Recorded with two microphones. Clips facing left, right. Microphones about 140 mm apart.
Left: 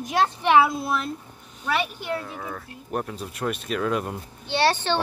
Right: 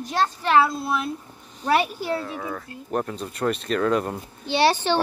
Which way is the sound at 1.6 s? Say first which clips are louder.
Right 5 dB; 35° right (ahead or behind).